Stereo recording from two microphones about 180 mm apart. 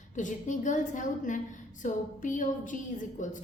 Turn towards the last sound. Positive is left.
turn(degrees=45)  # may be behind; listen again after turning